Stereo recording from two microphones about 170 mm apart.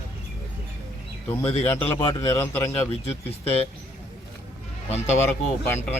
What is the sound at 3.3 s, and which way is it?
Speech, 35° left (ahead or behind).